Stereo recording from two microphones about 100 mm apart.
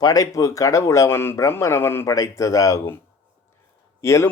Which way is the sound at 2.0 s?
35° left (ahead or behind).